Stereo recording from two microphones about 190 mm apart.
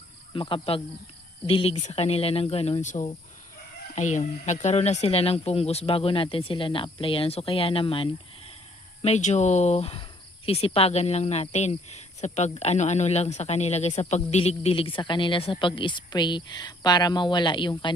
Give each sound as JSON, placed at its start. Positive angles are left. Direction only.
{"t": 0.3, "sound": "speech", "side_deg": 25}